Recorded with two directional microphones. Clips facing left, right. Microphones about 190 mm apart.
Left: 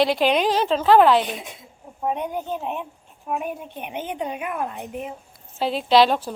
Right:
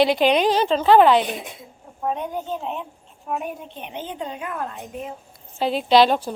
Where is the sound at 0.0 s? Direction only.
Centre (ahead or behind).